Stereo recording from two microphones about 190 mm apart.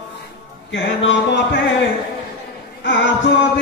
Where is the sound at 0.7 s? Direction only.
75° left (ahead or behind).